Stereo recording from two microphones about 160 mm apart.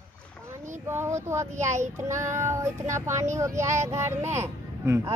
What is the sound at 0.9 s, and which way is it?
Child singing, 15° right (ahead or behind).